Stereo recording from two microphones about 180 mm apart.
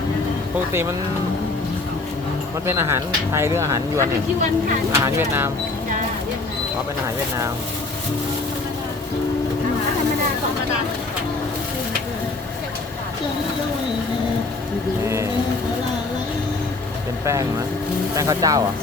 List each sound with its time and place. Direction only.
2.6 s speech: 15° right (ahead or behind)
15.0 s speech: 15° right (ahead or behind)
18.2 s speech: 20° right (ahead or behind)